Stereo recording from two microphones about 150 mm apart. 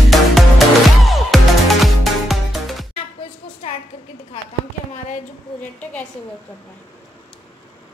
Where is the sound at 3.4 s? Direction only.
35° left (ahead or behind).